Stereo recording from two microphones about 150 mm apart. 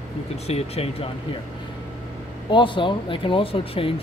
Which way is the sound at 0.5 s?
45° left (ahead or behind).